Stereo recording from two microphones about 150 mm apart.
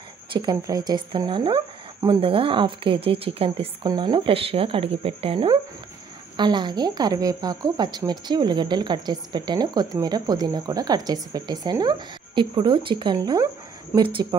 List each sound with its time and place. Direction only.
0.3 s a woman's voice: 30° right (ahead or behind)